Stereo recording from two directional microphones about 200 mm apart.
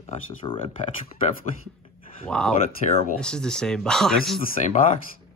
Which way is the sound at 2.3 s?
5° left (ahead or behind).